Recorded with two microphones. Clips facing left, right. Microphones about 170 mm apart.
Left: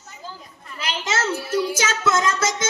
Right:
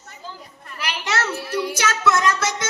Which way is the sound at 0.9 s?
25° left (ahead or behind).